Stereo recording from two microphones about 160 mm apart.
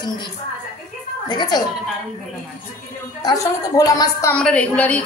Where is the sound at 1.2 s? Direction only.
25° left (ahead or behind).